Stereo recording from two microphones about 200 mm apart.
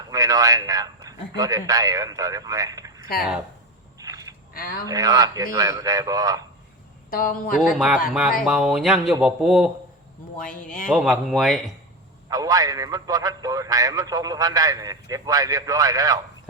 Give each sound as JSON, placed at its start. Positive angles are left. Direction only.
{"t": 0.1, "sound": "a man's voice", "side_deg": -15}
{"t": 3.9, "sound": "duck", "side_deg": -15}
{"t": 4.5, "sound": "speech", "side_deg": 45}
{"t": 4.9, "sound": "a man's voice", "side_deg": -15}
{"t": 7.1, "sound": "speech", "side_deg": 45}
{"t": 7.6, "sound": "speech", "side_deg": -5}
{"t": 10.5, "sound": "speech", "side_deg": 40}
{"t": 10.8, "sound": "speech", "side_deg": 0}
{"t": 12.3, "sound": "a man's voice", "side_deg": -15}